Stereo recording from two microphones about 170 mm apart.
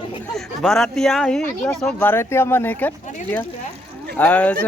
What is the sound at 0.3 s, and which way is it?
Speech, centre (ahead or behind).